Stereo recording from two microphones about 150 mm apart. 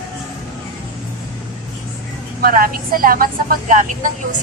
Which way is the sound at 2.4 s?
75° right (ahead or behind).